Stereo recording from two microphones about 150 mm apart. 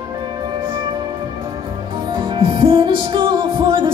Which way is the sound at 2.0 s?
35° right (ahead or behind).